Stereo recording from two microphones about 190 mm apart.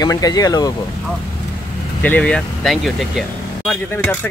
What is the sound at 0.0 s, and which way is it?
Speech, 20° left (ahead or behind).